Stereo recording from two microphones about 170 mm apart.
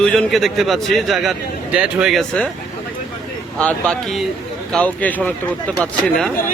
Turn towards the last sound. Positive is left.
turn(degrees=0)  # may be behind; listen again after turning